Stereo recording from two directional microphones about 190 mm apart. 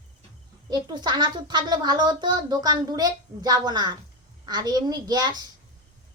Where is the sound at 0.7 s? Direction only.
20° right (ahead or behind).